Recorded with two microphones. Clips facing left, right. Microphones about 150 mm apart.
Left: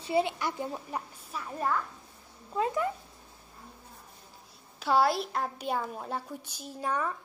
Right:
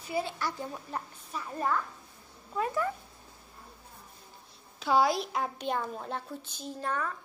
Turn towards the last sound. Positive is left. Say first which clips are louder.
# left 2 dB
turn(degrees=15)  # may be behind; listen again after turning